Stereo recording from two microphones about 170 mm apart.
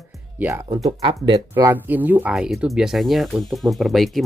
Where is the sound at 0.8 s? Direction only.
35° right (ahead or behind).